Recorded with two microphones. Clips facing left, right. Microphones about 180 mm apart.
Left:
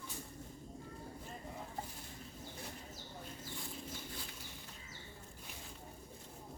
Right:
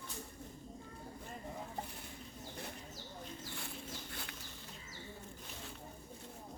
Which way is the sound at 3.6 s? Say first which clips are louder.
Even; 70° right (ahead or behind).